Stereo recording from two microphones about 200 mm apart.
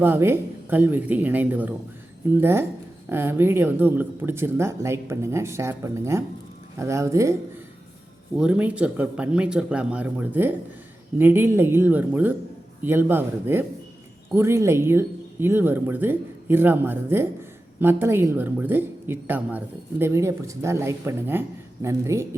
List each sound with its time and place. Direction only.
0.0 s a woman's voice: 10° right (ahead or behind)
8.4 s a woman's voice: 5° right (ahead or behind)